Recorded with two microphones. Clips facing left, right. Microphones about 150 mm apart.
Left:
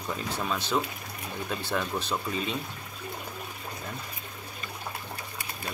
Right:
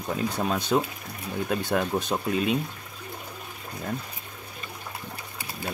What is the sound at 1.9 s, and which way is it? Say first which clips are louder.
Speech: right 4 dB; 40° right (ahead or behind).